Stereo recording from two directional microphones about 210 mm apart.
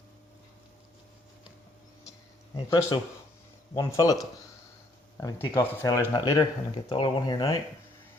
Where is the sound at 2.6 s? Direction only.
15° left (ahead or behind).